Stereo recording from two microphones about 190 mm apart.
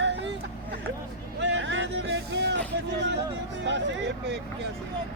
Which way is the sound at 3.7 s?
70° right (ahead or behind).